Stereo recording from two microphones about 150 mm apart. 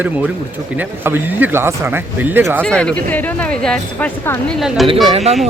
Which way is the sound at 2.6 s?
5° left (ahead or behind).